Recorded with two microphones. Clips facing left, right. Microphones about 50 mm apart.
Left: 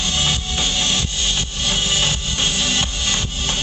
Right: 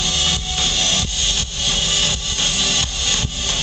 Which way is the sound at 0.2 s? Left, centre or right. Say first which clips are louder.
Even; centre.